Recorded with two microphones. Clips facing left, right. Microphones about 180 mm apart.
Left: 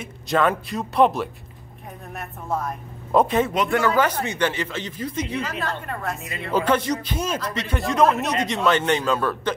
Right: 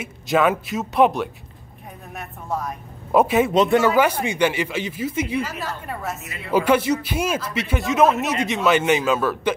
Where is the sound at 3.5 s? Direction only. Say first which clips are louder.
Right 5 dB; 20° right (ahead or behind).